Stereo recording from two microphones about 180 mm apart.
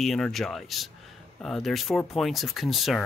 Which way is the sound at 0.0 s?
Centre (ahead or behind).